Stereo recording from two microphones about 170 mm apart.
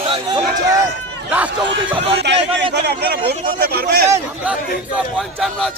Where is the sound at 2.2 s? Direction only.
85° right.